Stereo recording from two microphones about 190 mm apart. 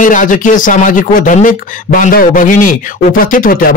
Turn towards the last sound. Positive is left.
turn(degrees=45)  # may be behind; listen again after turning